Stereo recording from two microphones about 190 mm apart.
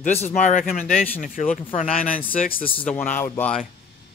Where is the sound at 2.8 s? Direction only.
5° left (ahead or behind).